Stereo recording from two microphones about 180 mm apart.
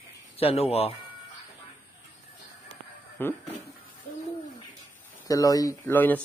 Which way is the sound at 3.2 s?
10° left (ahead or behind).